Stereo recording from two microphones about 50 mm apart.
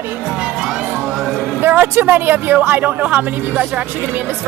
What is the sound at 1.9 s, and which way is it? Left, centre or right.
Speech, right.